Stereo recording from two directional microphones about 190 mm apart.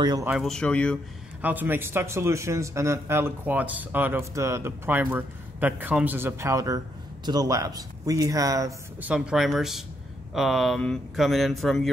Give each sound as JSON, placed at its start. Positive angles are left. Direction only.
{"t": 0.0, "sound": "speech", "side_deg": -20}
{"t": 0.3, "sound": "speech", "side_deg": 0}
{"t": 1.4, "sound": "a man's voice", "side_deg": -10}
{"t": 9.1, "sound": "speech", "side_deg": -5}